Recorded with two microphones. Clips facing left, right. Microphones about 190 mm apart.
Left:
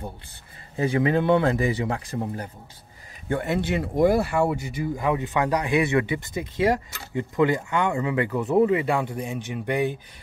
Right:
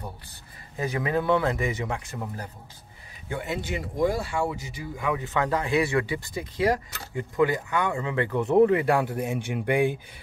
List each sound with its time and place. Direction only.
0.7 s speech: 30° left (ahead or behind)
3.3 s speech: 55° left (ahead or behind)
4.9 s speech: 35° left (ahead or behind)
5.2 s speech: 15° left (ahead or behind)
8.3 s speech: 5° left (ahead or behind); by 9.9 s 10° right (ahead or behind)